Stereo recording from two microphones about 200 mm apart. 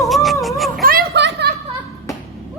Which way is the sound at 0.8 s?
45° right (ahead or behind).